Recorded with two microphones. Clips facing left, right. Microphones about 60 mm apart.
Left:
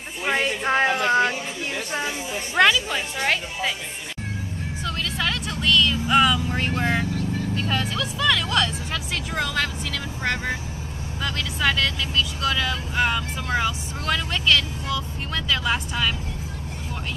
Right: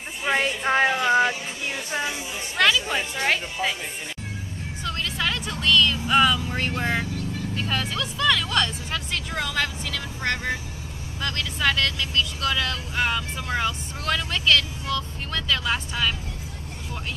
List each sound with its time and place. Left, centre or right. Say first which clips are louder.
0.3 s speech: even; centre
2.9 s speech: even; centre
4.8 s vehicle: even; centre
7.5 s speech: right 1 dB; centre